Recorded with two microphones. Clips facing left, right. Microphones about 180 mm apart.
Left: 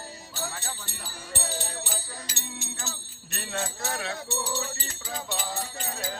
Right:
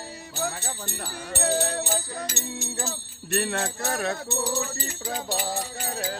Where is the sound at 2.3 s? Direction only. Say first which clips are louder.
Right 7 dB; 35° right (ahead or behind).